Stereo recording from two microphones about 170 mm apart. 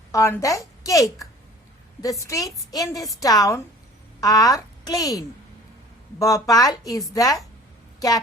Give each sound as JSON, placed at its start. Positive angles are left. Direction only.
{"t": 0.1, "sound": "a woman's voice", "side_deg": 15}